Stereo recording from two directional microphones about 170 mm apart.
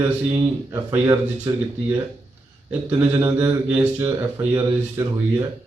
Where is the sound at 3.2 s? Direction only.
15° right (ahead or behind).